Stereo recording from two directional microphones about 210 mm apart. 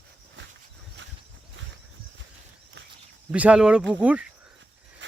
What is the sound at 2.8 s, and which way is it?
Walk, 55° right (ahead or behind).